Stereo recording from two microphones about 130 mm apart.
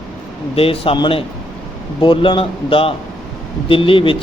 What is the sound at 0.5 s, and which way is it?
A man's voice, 45° left (ahead or behind).